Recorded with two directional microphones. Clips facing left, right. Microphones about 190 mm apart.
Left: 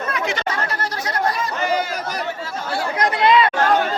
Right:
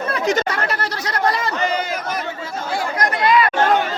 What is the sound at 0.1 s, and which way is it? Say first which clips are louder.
Chatter: right 7 dB; 40° right (ahead or behind).